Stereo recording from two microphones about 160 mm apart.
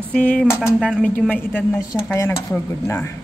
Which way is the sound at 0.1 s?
5° left (ahead or behind).